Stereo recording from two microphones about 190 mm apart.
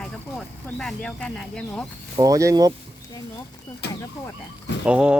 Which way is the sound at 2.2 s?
15° right (ahead or behind).